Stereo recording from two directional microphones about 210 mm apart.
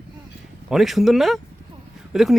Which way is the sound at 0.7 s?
Centre (ahead or behind).